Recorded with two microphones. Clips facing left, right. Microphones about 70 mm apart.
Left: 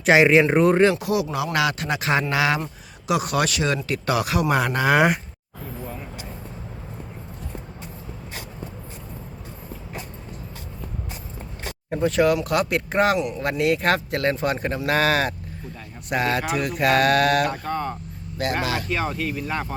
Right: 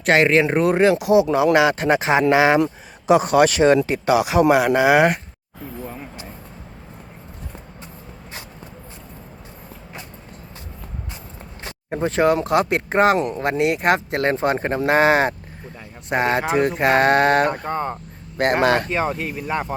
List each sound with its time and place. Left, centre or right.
0.0 s speech: centre
1.0 s a man's voice: right
4.9 s speech: centre
11.9 s speech: right
13.1 s a man's voice: right
13.4 s speech: right
17.7 s speech: right
18.3 s speech: right
18.9 s speech: right